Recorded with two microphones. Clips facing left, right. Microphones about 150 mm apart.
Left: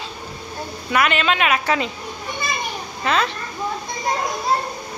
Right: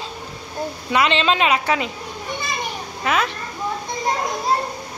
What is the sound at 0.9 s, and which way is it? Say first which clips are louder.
Speech: right 1 dB; 25° right (ahead or behind).